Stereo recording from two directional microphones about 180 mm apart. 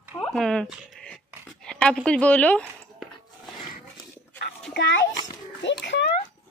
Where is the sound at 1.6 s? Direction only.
5° left (ahead or behind).